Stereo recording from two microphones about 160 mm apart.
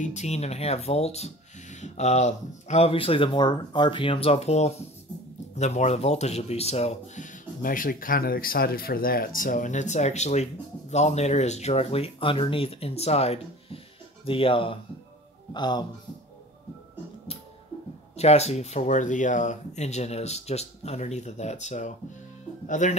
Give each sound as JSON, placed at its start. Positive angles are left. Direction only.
{"t": 0.0, "sound": "speech", "side_deg": 45}
{"t": 18.1, "sound": "speech", "side_deg": 40}